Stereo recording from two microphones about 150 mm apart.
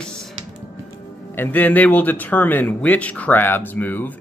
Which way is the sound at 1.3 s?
15° left (ahead or behind).